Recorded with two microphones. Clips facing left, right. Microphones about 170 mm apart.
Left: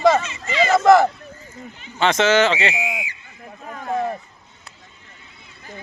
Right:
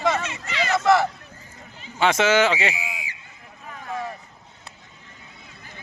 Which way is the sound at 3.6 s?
45° left (ahead or behind).